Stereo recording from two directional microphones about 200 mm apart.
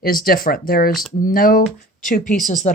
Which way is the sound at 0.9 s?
Centre (ahead or behind).